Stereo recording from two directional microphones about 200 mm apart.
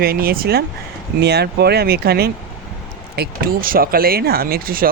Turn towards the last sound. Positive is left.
turn(degrees=-45)  # may be behind; listen again after turning